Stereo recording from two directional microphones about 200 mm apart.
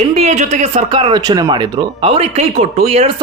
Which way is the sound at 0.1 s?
30° right (ahead or behind).